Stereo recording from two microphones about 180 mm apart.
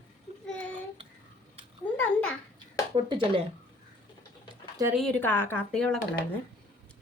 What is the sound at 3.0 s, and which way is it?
Speech, 30° right (ahead or behind).